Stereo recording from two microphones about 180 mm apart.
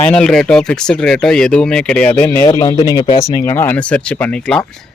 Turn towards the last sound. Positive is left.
turn(degrees=5)  # may be behind; listen again after turning